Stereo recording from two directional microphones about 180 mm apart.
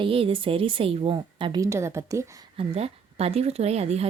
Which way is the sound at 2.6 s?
35° right (ahead or behind).